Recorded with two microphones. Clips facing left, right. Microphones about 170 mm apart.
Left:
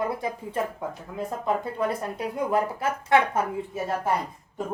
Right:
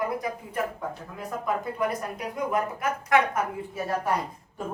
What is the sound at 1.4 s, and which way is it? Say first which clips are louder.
Speech: left 1 dB; 30° left (ahead or behind).